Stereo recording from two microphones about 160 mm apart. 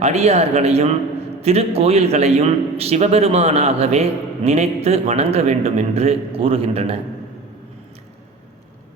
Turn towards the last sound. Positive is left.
turn(degrees=-40)  # may be behind; listen again after turning